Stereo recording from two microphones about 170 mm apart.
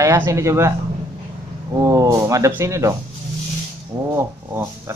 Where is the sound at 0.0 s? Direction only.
15° right (ahead or behind).